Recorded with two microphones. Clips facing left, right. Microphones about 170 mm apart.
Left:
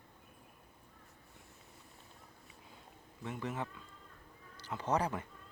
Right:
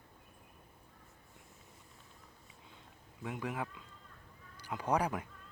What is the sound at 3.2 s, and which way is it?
A man's voice, 10° right (ahead or behind).